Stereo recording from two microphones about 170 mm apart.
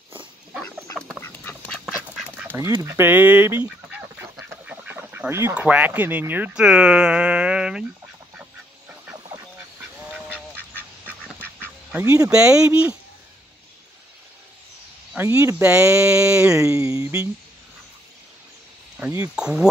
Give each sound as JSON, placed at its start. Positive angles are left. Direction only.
{"t": 0.6, "sound": "duck", "side_deg": 5}
{"t": 1.9, "sound": "duck", "side_deg": 0}
{"t": 2.5, "sound": "chicken", "side_deg": -20}
{"t": 4.6, "sound": "speech", "side_deg": -10}
{"t": 10.3, "sound": "duck", "side_deg": 10}
{"t": 11.4, "sound": "duck", "side_deg": -10}
{"t": 12.3, "sound": "speech", "side_deg": -5}
{"t": 15.1, "sound": "speech", "side_deg": -15}
{"t": 16.6, "sound": "speech", "side_deg": -15}
{"t": 19.2, "sound": "speech", "side_deg": -5}